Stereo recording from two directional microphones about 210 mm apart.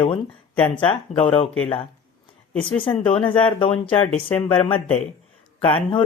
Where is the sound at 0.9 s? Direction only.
25° left (ahead or behind).